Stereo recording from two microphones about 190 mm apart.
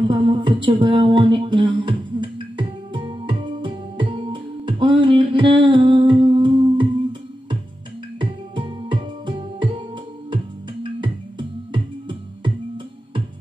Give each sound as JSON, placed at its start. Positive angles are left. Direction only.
{"t": 0.0, "sound": "music", "side_deg": -25}